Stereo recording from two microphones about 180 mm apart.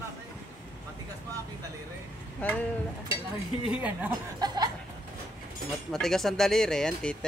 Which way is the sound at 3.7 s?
10° right (ahead or behind).